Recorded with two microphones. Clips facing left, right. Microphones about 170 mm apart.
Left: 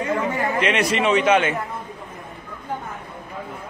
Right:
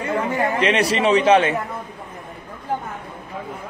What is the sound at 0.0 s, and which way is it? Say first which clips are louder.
A man's voice: right 1 dB; 35° right (ahead or behind).